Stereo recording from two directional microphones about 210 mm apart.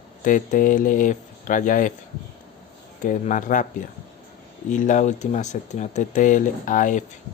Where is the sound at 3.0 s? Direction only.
35° left (ahead or behind).